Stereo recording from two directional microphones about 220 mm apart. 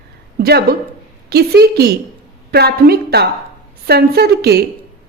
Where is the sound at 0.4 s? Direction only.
45° right (ahead or behind).